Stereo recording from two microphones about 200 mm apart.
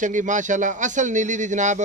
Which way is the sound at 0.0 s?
40° right (ahead or behind).